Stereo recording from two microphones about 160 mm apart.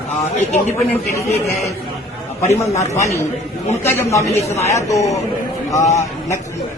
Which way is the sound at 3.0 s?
20° left (ahead or behind).